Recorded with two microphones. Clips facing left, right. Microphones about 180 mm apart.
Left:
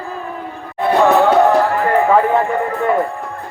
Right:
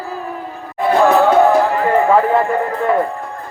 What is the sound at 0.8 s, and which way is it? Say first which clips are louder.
Music: even; centre (ahead or behind).